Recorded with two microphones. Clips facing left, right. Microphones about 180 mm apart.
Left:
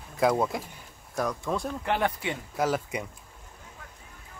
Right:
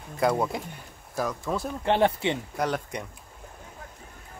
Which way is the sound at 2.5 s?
5° left (ahead or behind).